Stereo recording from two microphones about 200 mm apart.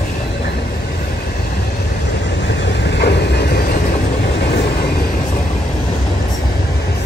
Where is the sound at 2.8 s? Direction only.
55° left (ahead or behind).